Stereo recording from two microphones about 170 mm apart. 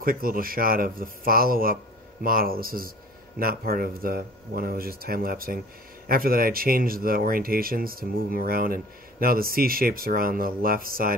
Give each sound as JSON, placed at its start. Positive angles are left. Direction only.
{"t": 0.0, "sound": "speech", "side_deg": -55}